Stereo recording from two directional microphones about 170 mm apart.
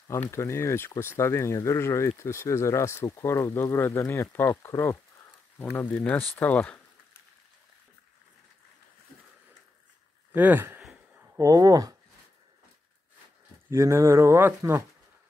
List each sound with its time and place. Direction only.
0.3 s speech: 15° left (ahead or behind)
10.3 s speech: 10° right (ahead or behind)
13.7 s speech: 15° right (ahead or behind)